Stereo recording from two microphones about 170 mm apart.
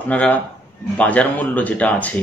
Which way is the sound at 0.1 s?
5° left (ahead or behind).